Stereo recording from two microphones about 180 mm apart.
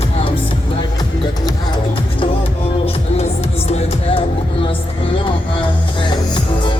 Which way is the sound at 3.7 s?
35° left (ahead or behind).